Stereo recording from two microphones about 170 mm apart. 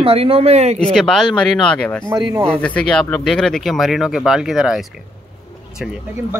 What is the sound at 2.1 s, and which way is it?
Speech, 25° right (ahead or behind).